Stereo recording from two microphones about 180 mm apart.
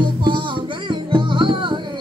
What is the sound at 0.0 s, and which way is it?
Music, 25° right (ahead or behind).